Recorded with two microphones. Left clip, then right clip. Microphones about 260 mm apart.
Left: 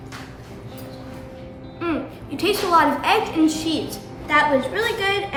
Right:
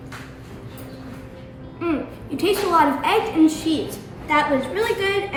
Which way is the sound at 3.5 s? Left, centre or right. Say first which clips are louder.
Right 1 dB; left.